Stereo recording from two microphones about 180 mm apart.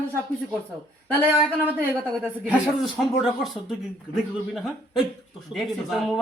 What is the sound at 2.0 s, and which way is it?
A man's voice, 5° left (ahead or behind).